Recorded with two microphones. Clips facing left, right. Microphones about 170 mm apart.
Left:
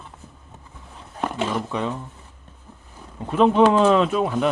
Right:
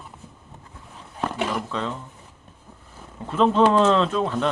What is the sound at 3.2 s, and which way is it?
Speech, 15° left (ahead or behind).